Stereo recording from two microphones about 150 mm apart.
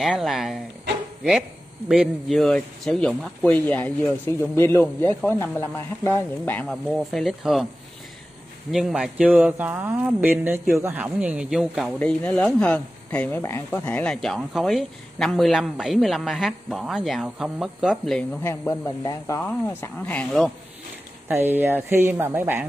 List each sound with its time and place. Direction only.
0.0 s speech: centre (ahead or behind)
1.9 s speech: centre (ahead or behind)
8.7 s speech: 5° right (ahead or behind)
12.0 s speech: 10° left (ahead or behind)
18.4 s speech: 15° left (ahead or behind)
21.3 s speech: 15° right (ahead or behind)